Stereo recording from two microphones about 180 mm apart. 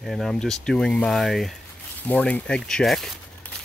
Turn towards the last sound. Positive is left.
turn(degrees=0)  # may be behind; listen again after turning